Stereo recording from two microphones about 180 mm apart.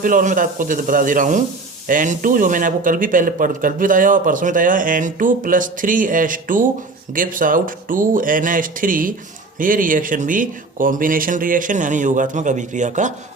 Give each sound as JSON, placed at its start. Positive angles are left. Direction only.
{"t": 0.0, "sound": "speech", "side_deg": -50}